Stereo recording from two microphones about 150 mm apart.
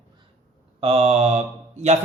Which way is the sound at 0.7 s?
45° right (ahead or behind).